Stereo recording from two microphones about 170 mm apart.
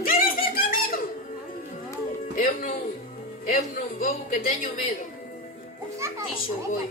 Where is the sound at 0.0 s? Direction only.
60° left (ahead or behind).